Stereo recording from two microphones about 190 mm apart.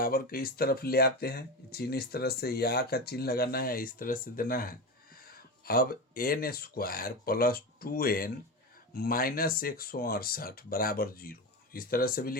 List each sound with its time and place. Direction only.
0.0 s speech: 50° left (ahead or behind)